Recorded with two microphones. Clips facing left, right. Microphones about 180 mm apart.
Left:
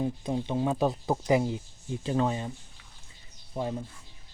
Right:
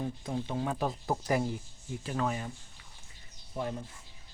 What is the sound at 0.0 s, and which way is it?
Speech, 20° left (ahead or behind).